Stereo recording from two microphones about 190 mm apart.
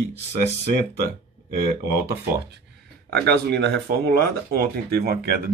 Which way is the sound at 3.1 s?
60° right (ahead or behind).